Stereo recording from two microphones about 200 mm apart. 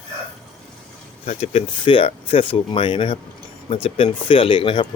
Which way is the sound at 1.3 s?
30° left (ahead or behind).